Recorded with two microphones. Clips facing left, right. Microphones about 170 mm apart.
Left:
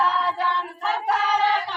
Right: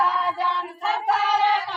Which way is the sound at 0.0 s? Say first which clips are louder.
Even; 10° right (ahead or behind).